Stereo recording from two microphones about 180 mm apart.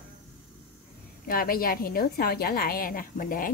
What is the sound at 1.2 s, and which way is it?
A woman's voice, 55° left (ahead or behind).